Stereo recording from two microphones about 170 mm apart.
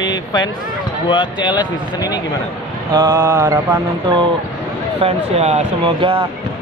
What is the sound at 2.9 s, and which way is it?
Mantra, 20° right (ahead or behind).